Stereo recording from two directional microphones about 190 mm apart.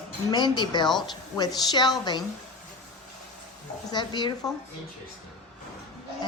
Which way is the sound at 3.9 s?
25° left (ahead or behind).